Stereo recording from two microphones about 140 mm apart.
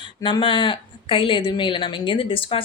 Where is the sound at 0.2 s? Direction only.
35° left (ahead or behind).